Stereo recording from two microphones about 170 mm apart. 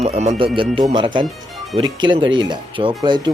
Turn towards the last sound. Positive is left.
turn(degrees=-25)  # may be behind; listen again after turning